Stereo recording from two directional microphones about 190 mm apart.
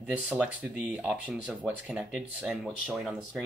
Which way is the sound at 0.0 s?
5° right (ahead or behind).